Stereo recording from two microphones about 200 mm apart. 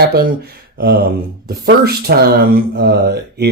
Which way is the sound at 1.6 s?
50° right (ahead or behind).